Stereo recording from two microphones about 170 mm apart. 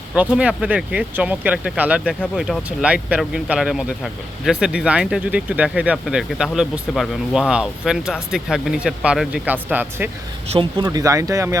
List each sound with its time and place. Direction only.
0.1 s speech: 5° right (ahead or behind)
10.5 s speech: 30° right (ahead or behind)
10.8 s speech: 20° right (ahead or behind)